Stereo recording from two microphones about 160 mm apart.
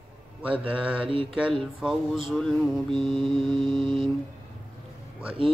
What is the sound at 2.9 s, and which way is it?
Mantra, 30° right (ahead or behind).